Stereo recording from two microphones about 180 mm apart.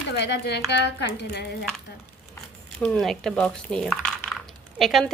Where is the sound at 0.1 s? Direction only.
70° left (ahead or behind).